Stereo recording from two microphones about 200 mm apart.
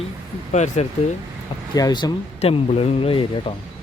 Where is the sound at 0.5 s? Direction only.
35° left (ahead or behind).